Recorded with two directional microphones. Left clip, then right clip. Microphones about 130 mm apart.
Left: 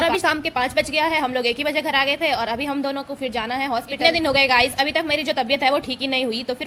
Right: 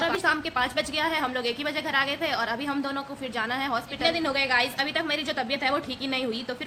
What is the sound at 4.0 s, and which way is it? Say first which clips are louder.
A woman's voice: left 9 dB; 45° left (ahead or behind).